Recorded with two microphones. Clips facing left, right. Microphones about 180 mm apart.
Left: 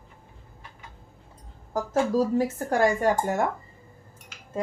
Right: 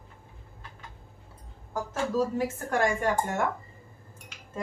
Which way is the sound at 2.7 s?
35° left (ahead or behind).